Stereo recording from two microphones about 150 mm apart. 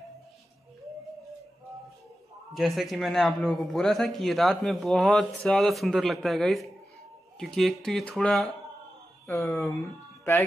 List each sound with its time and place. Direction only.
2.5 s speech: centre (ahead or behind)
9.2 s speech: 20° left (ahead or behind)